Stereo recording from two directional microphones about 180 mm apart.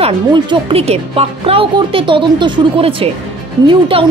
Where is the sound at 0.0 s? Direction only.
25° right (ahead or behind).